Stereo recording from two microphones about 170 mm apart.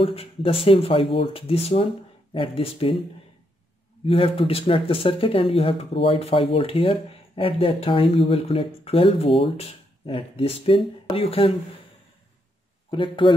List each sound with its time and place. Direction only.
0.0 s speech: 35° left (ahead or behind)
4.0 s speech: 35° left (ahead or behind)
12.9 s speech: 30° left (ahead or behind)